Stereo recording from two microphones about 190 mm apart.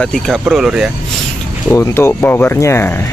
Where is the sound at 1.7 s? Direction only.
15° left (ahead or behind).